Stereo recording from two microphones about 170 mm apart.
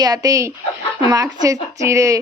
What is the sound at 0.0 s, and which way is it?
Speech, 20° right (ahead or behind).